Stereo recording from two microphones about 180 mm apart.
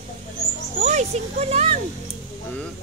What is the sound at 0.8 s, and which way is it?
Speech, 40° right (ahead or behind).